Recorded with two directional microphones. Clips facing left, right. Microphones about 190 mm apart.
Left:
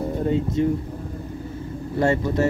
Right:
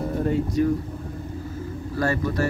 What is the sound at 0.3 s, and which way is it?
Speech, 25° left (ahead or behind).